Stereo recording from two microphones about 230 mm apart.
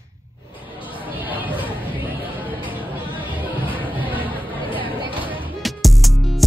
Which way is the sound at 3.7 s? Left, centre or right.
Centre.